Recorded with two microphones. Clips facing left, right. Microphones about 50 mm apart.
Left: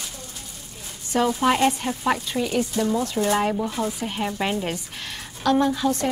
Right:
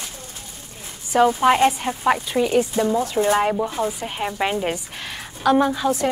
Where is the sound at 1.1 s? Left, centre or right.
Centre.